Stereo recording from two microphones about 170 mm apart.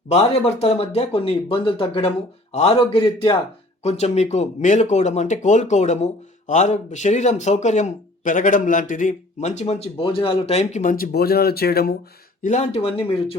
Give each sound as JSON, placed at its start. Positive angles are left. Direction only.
{"t": 0.1, "sound": "speech", "side_deg": 40}
{"t": 10.9, "sound": "speech", "side_deg": 65}
{"t": 12.4, "sound": "speech", "side_deg": 45}